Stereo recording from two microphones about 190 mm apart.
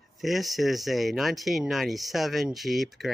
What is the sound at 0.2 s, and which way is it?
Speech, centre (ahead or behind).